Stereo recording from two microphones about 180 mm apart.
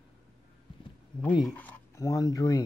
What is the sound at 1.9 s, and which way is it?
Speech, 20° left (ahead or behind).